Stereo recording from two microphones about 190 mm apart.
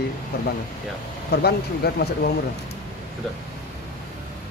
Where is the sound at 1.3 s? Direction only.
60° left (ahead or behind).